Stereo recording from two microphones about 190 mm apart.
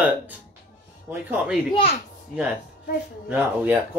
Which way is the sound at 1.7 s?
30° left (ahead or behind).